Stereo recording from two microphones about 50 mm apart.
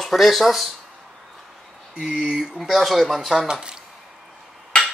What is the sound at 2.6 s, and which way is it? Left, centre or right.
Cutlery, centre.